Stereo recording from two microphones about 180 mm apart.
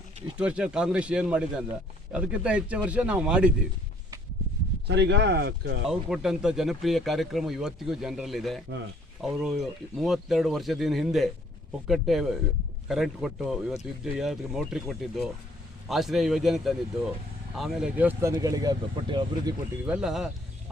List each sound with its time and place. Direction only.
0.3 s speech: 5° right (ahead or behind)
4.9 s speech: 75° right (ahead or behind)
5.9 s speech: 5° right (ahead or behind); by 19.5 s 25° right (ahead or behind)
19.8 s speech: 5° right (ahead or behind)